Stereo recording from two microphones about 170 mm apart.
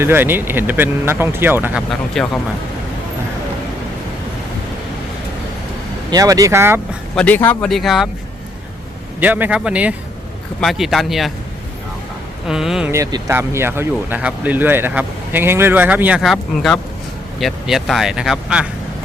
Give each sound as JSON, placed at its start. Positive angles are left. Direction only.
{"t": 0.0, "sound": "speech", "side_deg": -15}
{"t": 1.9, "sound": "speech", "side_deg": 0}
{"t": 6.1, "sound": "speech", "side_deg": -20}
{"t": 7.2, "sound": "speech", "side_deg": 10}
{"t": 9.2, "sound": "speech", "side_deg": -10}
{"t": 12.5, "sound": "speech", "side_deg": -5}
{"t": 12.9, "sound": "speech", "side_deg": -20}